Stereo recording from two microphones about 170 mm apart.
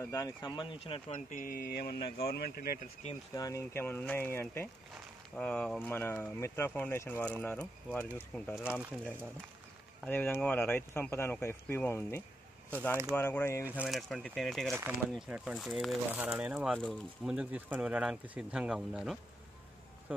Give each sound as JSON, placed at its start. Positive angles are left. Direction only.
{"t": 0.0, "sound": "speech", "side_deg": 15}
{"t": 0.6, "sound": "speech", "side_deg": 30}
{"t": 1.3, "sound": "speech", "side_deg": 55}
{"t": 3.3, "sound": "speech", "side_deg": 20}
{"t": 8.5, "sound": "speech", "side_deg": -5}
{"t": 10.0, "sound": "speech", "side_deg": 10}
{"t": 13.7, "sound": "speech", "side_deg": -5}